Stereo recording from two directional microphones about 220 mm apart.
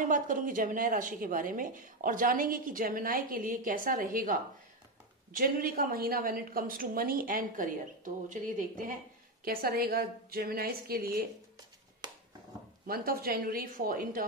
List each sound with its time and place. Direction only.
0.1 s a woman's voice: 35° right (ahead or behind)
12.8 s speech: 40° right (ahead or behind)